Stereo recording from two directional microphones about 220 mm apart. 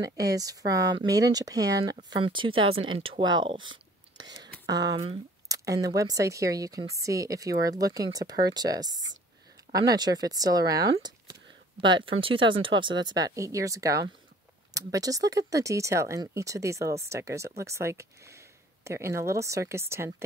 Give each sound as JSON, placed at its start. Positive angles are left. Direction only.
{"t": 0.0, "sound": "speech", "side_deg": -15}